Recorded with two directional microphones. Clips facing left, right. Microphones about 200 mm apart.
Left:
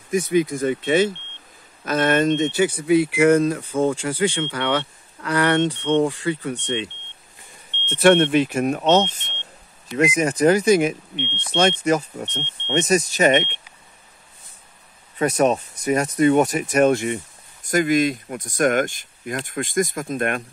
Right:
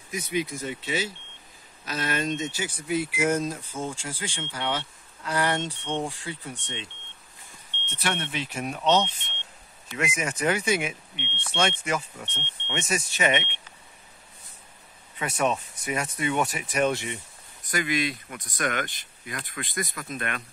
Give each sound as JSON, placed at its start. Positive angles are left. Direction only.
{"t": 0.1, "sound": "speech", "side_deg": 50}
{"t": 8.0, "sound": "speech", "side_deg": 60}
{"t": 15.1, "sound": "speech", "side_deg": 40}